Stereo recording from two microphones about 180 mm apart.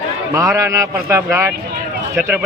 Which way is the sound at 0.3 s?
15° right (ahead or behind).